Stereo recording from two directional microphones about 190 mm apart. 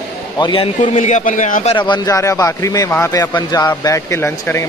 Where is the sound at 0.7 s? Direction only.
40° left (ahead or behind).